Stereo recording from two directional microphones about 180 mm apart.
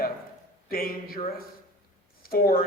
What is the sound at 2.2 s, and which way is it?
Speech, 55° left (ahead or behind).